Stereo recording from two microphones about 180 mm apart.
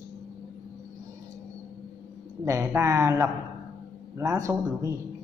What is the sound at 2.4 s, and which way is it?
Speech, 15° right (ahead or behind).